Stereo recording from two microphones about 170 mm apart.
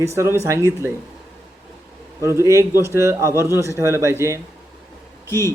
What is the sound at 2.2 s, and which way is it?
A man's voice, 15° right (ahead or behind).